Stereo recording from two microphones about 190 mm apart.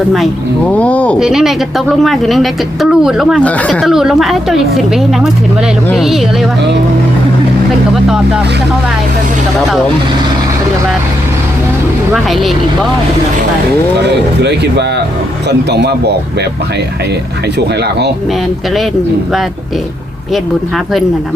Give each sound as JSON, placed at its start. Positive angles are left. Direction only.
{"t": 0.7, "sound": "speech", "side_deg": 5}
{"t": 12.1, "sound": "speech", "side_deg": 0}
{"t": 14.0, "sound": "speech", "side_deg": -60}